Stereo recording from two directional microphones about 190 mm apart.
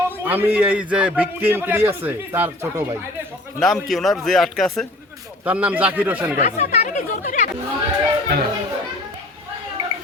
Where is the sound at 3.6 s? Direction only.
Centre (ahead or behind).